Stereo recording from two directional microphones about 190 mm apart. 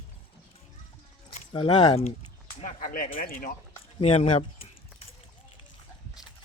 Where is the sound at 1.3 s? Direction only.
25° left (ahead or behind); by 3.5 s 50° left (ahead or behind).